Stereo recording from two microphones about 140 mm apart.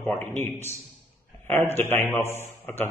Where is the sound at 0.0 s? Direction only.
15° left (ahead or behind).